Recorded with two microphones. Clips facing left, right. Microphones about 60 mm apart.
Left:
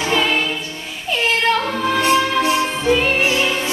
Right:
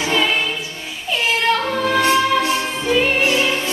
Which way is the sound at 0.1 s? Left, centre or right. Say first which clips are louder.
Left 1 dB; centre.